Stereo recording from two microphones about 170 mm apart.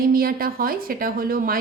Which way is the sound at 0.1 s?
60° right (ahead or behind).